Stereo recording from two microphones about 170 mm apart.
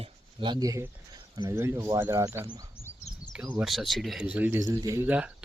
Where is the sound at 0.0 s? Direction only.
30° right (ahead or behind).